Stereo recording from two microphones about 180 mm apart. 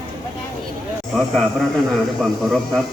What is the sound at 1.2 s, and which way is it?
Speech, 5° left (ahead or behind).